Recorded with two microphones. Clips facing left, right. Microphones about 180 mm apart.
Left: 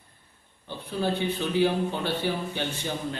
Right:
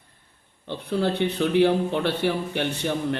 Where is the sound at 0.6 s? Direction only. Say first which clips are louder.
Right 4 dB; 75° right (ahead or behind).